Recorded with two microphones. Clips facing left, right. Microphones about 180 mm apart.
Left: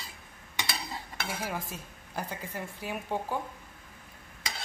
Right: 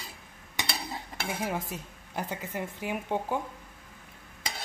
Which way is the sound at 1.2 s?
20° right (ahead or behind).